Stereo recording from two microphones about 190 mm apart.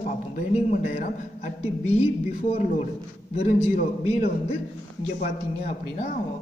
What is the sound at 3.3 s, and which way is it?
A man's voice, 35° left (ahead or behind).